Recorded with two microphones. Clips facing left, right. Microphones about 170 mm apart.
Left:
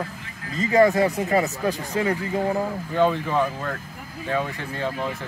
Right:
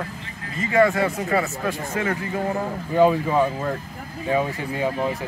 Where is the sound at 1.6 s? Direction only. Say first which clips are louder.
Left 1 dB; 30° left (ahead or behind).